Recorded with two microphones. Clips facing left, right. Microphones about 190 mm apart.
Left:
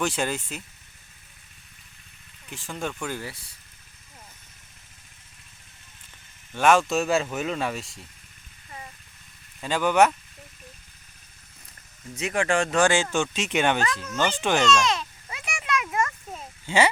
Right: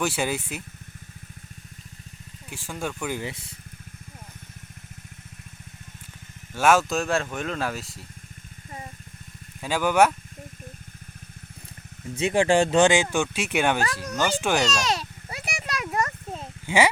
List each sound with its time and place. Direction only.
0.0 s speech: 10° right (ahead or behind)
2.5 s speech: 10° right (ahead or behind)
3.1 s speech: 20° right (ahead or behind)
6.5 s speech: 5° right (ahead or behind)
9.6 s speech: 10° right (ahead or behind)
12.1 s speech: 30° right (ahead or behind)
12.9 s speech: 15° right (ahead or behind)
13.8 s speech: 35° right (ahead or behind)
14.2 s speech: 10° right (ahead or behind)
14.8 s a sound: 35° right (ahead or behind)
16.6 s speech: 10° right (ahead or behind)